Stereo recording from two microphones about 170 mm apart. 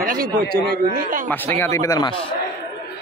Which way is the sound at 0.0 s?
55° right (ahead or behind).